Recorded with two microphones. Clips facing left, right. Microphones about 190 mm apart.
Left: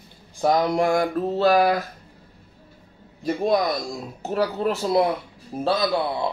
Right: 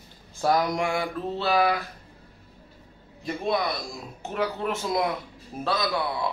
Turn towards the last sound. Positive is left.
turn(degrees=30)  # may be behind; listen again after turning